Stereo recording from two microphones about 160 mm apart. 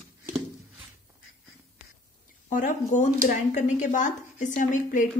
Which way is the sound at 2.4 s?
55° left (ahead or behind).